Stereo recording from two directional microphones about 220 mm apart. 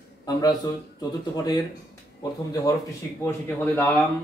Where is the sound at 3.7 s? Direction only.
10° left (ahead or behind).